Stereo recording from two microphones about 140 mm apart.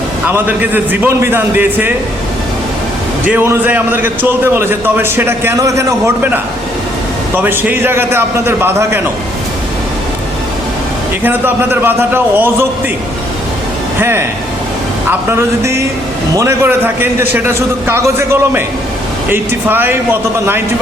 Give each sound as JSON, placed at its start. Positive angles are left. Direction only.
{"t": 0.3, "sound": "a man's voice", "side_deg": -15}
{"t": 3.2, "sound": "a man's voice", "side_deg": -15}
{"t": 11.2, "sound": "a man's voice", "side_deg": -15}
{"t": 14.0, "sound": "a man's voice", "side_deg": -15}
{"t": 15.3, "sound": "a man's voice", "side_deg": -20}